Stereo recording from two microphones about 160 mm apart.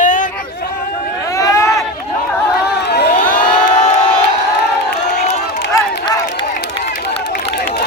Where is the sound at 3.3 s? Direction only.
55° left (ahead or behind).